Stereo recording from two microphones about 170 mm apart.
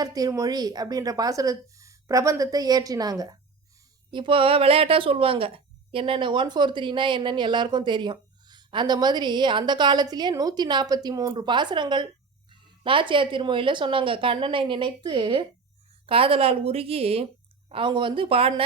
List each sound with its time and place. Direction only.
0.0 s a woman's voice: 20° right (ahead or behind)